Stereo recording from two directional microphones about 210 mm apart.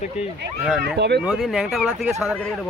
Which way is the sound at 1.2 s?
Centre (ahead or behind).